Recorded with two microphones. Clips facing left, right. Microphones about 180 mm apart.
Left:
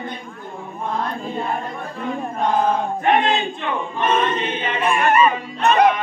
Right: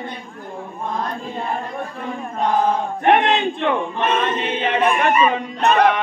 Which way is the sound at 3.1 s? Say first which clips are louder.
Right 3 dB; 65° right (ahead or behind).